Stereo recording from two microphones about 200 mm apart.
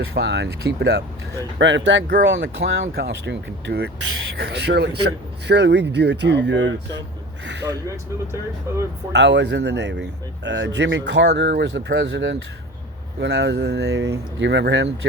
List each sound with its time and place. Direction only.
0.1 s speech: 60° right (ahead or behind); by 2.9 s 75° right (ahead or behind)
2.9 s speech: 55° right (ahead or behind)
7.9 s speech: 15° right (ahead or behind)
9.1 s speech: 60° right (ahead or behind)